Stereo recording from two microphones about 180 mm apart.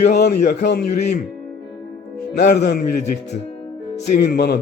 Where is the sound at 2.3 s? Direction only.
65° left (ahead or behind).